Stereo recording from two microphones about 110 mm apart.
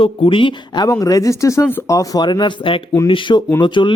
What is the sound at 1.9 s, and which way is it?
Speech, 40° left (ahead or behind).